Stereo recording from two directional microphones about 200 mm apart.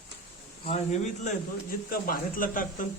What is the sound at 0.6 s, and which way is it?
Speech, 30° left (ahead or behind).